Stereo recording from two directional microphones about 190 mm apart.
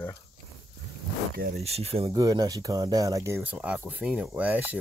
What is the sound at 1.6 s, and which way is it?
Speech, 35° right (ahead or behind).